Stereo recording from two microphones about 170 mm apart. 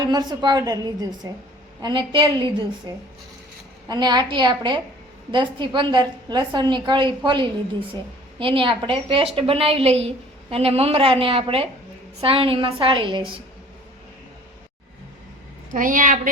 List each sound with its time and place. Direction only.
0.0 s a woman's voice: 25° right (ahead or behind)
15.7 s a woman's voice: 50° right (ahead or behind)